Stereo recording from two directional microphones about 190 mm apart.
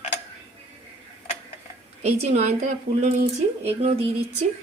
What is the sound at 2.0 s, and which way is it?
Speech, 35° right (ahead or behind).